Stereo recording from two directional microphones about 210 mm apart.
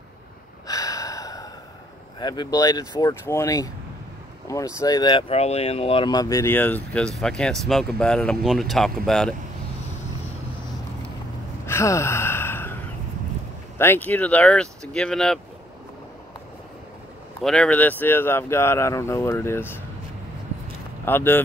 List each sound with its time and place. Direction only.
0.7 s gasp: 15° left (ahead or behind)
2.1 s speech: 20° left (ahead or behind)
5.3 s speech: 30° left (ahead or behind); by 9.3 s centre (ahead or behind)
11.6 s sigh: 15° left (ahead or behind)
13.7 s speech: 10° left (ahead or behind)
17.4 s speech: 5° left (ahead or behind)
21.0 s speech: 10° left (ahead or behind)